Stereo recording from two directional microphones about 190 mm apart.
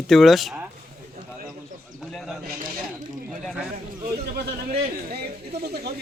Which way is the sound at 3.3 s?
Centre (ahead or behind).